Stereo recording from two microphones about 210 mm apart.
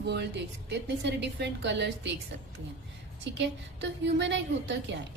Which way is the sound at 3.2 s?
55° right (ahead or behind).